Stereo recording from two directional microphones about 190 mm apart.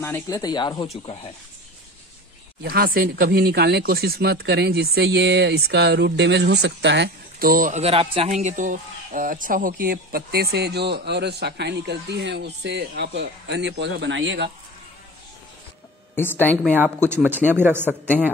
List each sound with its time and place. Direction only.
0.0 s speech: 15° left (ahead or behind)
1.0 s speech: 30° left (ahead or behind)
2.6 s speech: 55° right (ahead or behind); by 14.5 s 75° right (ahead or behind)
16.2 s speech: 10° left (ahead or behind)
16.7 s speech: 10° right (ahead or behind)